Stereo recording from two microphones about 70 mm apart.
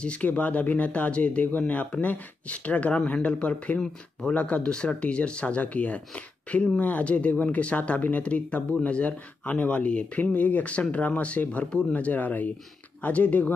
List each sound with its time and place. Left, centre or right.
0.0 s speech: centre